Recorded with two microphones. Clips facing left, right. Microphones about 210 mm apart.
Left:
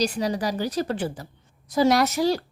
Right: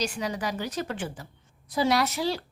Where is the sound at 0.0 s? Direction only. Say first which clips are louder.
Left 5 dB; 35° left (ahead or behind).